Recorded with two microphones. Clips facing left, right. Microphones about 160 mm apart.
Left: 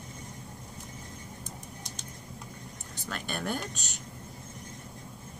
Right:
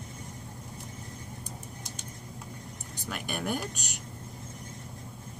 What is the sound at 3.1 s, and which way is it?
Speech, 10° right (ahead or behind).